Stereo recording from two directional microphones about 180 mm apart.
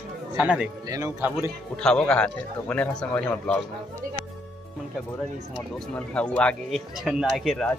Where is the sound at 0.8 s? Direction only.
20° right (ahead or behind).